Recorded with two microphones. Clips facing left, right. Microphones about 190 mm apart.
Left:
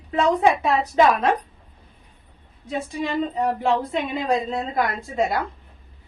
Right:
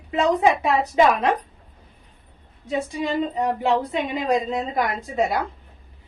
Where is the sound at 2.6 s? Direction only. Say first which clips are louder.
Right 2 dB; 15° right (ahead or behind).